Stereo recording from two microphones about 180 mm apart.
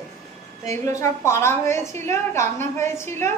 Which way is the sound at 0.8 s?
15° left (ahead or behind).